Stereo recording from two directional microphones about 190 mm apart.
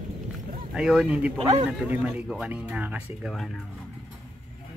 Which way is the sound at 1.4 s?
35° right (ahead or behind).